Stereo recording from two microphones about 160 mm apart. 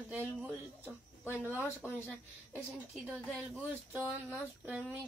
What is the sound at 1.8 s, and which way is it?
Speech, 5° right (ahead or behind).